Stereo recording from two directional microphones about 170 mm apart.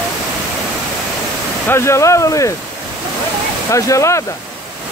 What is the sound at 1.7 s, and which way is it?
Speech, 15° left (ahead or behind).